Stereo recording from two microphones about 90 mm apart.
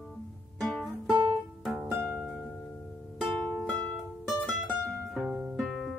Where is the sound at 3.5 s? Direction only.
20° left (ahead or behind).